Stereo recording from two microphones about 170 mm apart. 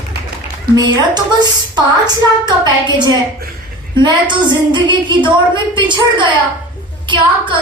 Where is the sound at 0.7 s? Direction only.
25° right (ahead or behind).